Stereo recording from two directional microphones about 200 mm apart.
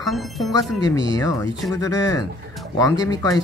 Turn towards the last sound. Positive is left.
turn(degrees=20)  # may be behind; listen again after turning